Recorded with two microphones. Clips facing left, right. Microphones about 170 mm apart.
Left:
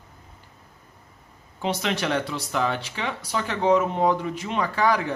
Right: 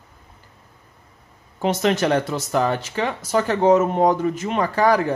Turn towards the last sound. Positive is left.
turn(degrees=-40)  # may be behind; listen again after turning